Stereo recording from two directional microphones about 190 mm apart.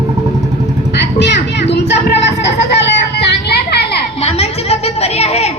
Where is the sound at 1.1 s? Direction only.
65° left (ahead or behind).